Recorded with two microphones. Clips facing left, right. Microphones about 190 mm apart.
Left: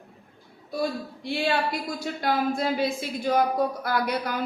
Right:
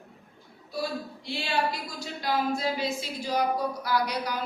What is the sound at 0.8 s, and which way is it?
Speech, 55° left (ahead or behind).